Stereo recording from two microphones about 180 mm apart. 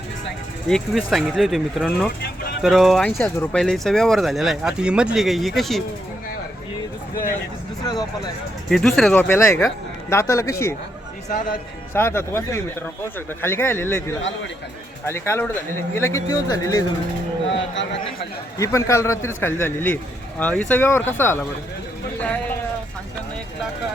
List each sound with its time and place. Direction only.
0.7 s speech: centre (ahead or behind)
2.2 s vehicle: 65° left (ahead or behind)
2.6 s speech: centre (ahead or behind)
3.2 s speech: 10° left (ahead or behind)
8.7 s speech: 5° left (ahead or behind)
11.3 s speech: 45° left (ahead or behind)
11.9 s speech: 15° left (ahead or behind)
18.6 s speech: 15° left (ahead or behind)